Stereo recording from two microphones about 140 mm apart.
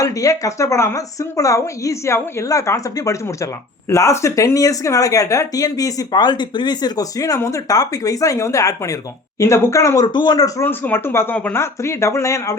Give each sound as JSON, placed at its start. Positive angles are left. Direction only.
{"t": 0.0, "sound": "speech", "side_deg": 25}
{"t": 10.1, "sound": "speech", "side_deg": 30}